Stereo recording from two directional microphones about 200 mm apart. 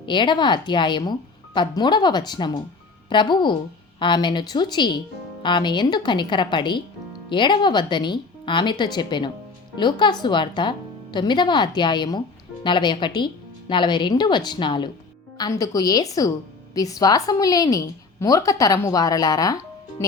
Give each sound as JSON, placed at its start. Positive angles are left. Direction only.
{"t": 0.0, "sound": "a woman's voice", "side_deg": 25}